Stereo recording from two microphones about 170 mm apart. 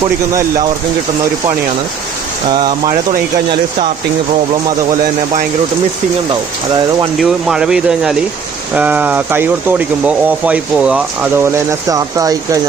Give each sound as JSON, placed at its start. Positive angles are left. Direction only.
{"t": 2.5, "sound": "speech", "side_deg": -25}
{"t": 7.2, "sound": "speech", "side_deg": 0}